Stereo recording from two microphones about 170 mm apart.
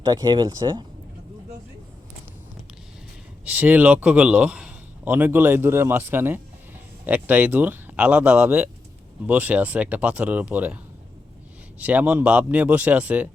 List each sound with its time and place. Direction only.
0.0 s speech: 25° right (ahead or behind)
3.4 s a man's voice: 10° right (ahead or behind)
11.8 s a man's voice: 10° right (ahead or behind)